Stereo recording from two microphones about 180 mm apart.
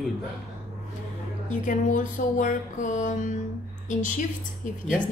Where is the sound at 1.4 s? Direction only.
45° left (ahead or behind).